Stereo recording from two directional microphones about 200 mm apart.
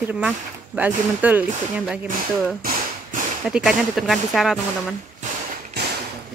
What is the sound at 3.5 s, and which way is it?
Speech, 5° right (ahead or behind).